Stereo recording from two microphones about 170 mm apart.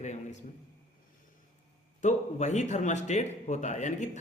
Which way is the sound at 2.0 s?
45° left (ahead or behind).